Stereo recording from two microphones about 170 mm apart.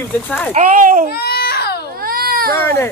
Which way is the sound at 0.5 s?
50° right (ahead or behind).